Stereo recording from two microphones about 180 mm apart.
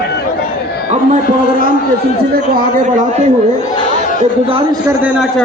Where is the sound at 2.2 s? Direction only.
55° right (ahead or behind); by 3.3 s 40° right (ahead or behind).